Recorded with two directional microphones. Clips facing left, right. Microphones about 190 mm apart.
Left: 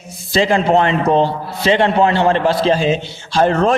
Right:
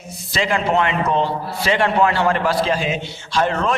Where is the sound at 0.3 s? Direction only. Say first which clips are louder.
Left 6 dB; 30° left (ahead or behind).